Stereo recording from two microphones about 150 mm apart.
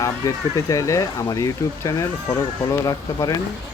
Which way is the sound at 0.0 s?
20° left (ahead or behind).